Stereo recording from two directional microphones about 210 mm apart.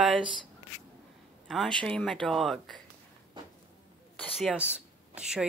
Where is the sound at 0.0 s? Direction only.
5° right (ahead or behind).